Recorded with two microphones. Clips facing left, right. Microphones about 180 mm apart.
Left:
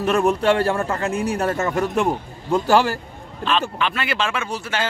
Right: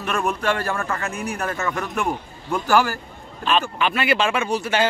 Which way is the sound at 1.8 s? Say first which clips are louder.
Left 5 dB; 20° left (ahead or behind).